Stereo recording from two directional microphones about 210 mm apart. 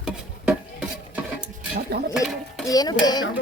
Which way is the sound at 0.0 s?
5° right (ahead or behind).